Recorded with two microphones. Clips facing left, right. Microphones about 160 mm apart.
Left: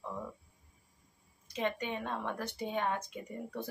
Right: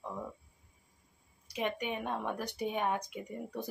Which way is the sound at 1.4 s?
15° right (ahead or behind).